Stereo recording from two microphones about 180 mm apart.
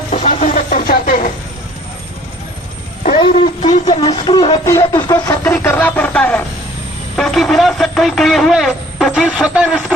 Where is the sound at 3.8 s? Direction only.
25° left (ahead or behind); by 6.4 s 10° left (ahead or behind).